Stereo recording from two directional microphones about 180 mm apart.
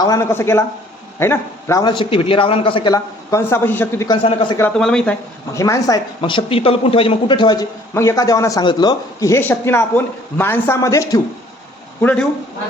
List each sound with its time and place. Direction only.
0.0 s a man's voice: 20° left (ahead or behind)
4.2 s speech: 30° left (ahead or behind)
4.8 s speech: 5° left (ahead or behind)
5.5 s speech: 15° left (ahead or behind)